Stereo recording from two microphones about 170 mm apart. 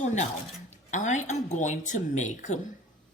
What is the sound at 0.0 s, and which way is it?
Speech, 45° left (ahead or behind).